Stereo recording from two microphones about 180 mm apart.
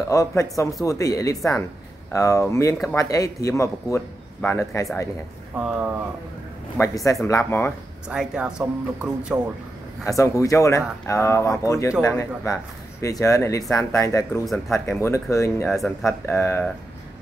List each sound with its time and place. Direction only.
0.1 s speech: 15° left (ahead or behind)
5.6 s speech: 10° right (ahead or behind)
6.8 s speech: 15° left (ahead or behind)
8.1 s speech: 5° right (ahead or behind)
10.0 s speech: 15° left (ahead or behind)
14.4 s speech: centre (ahead or behind)
14.9 s speech: 15° left (ahead or behind)
15.7 s speech: centre (ahead or behind)
16.1 s speech: 15° left (ahead or behind)